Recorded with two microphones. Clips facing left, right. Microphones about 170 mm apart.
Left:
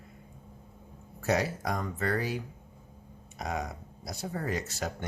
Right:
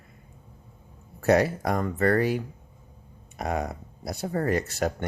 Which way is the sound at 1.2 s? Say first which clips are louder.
Right 8 dB; 60° right (ahead or behind).